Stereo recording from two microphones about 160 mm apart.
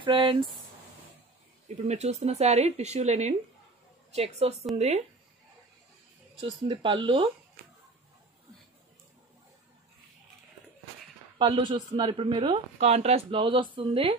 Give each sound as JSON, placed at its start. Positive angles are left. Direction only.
{"t": 0.0, "sound": "speech", "side_deg": -30}
{"t": 1.9, "sound": "speech", "side_deg": -45}
{"t": 6.4, "sound": "speech", "side_deg": -30}
{"t": 11.3, "sound": "speech", "side_deg": -30}
{"t": 12.7, "sound": "speech", "side_deg": -40}